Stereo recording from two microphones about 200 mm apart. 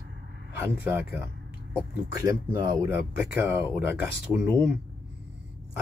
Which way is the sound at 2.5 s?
20° right (ahead or behind).